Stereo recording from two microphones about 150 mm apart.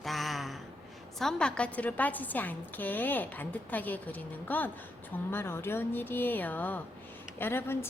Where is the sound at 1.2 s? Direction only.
5° left (ahead or behind).